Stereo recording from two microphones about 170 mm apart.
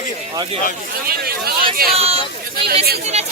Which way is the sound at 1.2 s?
65° right (ahead or behind).